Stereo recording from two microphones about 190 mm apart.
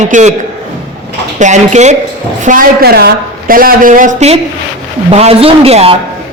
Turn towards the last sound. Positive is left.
turn(degrees=-30)  # may be behind; listen again after turning